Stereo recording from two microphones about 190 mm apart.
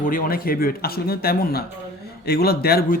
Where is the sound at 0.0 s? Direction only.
50° left (ahead or behind).